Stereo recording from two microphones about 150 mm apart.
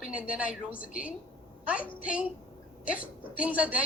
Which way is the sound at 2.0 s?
10° right (ahead or behind).